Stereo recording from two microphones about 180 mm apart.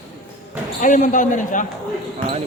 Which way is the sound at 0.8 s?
45° left (ahead or behind).